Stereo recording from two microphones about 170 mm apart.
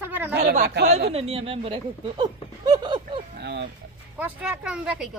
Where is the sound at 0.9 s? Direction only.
40° right (ahead or behind).